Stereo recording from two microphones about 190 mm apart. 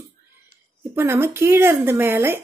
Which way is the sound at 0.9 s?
15° right (ahead or behind).